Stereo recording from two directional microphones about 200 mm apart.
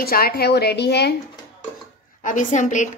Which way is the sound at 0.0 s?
50° left (ahead or behind).